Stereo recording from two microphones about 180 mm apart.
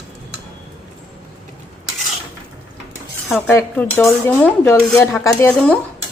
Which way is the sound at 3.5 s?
10° left (ahead or behind).